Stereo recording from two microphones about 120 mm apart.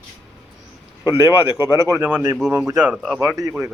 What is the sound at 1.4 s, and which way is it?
Speech, 20° right (ahead or behind).